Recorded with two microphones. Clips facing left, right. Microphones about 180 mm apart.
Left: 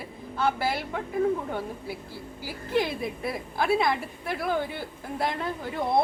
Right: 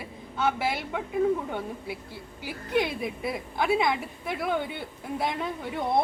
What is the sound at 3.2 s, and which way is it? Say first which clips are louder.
Speech: right 1 dB; centre (ahead or behind).